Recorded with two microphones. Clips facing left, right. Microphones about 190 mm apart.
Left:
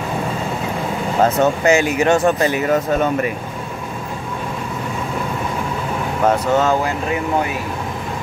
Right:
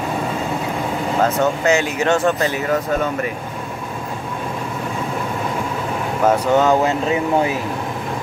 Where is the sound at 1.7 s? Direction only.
10° left (ahead or behind).